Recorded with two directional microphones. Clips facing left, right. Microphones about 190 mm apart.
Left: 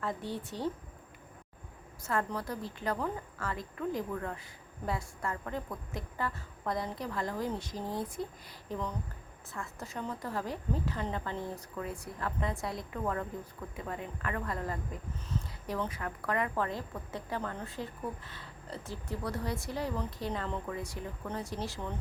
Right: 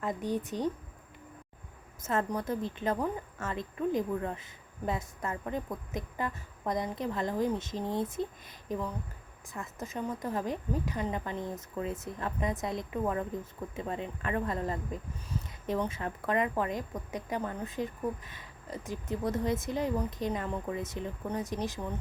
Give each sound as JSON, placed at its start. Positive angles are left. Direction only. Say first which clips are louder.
{"t": 0.0, "sound": "a woman's voice", "louder": "right 4 dB", "side_deg": -15}
{"t": 2.0, "sound": "a woman's voice", "louder": "right 2 dB", "side_deg": -20}